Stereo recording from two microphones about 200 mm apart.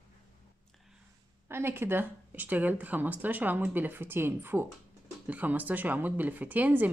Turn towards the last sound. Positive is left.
turn(degrees=-10)  # may be behind; listen again after turning